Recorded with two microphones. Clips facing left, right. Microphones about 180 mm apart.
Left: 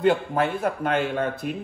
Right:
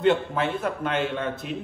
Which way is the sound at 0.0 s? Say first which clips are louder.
Left 1 dB; 40° left (ahead or behind).